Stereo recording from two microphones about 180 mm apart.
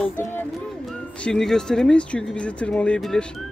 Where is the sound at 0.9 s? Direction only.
5° left (ahead or behind).